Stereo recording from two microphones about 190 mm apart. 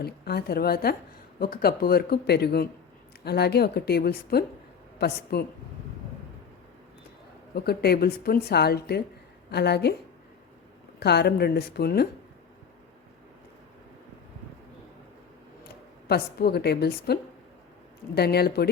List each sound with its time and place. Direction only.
0.0 s a woman's voice: 55° left (ahead or behind)
7.5 s a woman's voice: 55° left (ahead or behind)
11.0 s a woman's voice: 60° left (ahead or behind)
16.0 s a woman's voice: 55° left (ahead or behind)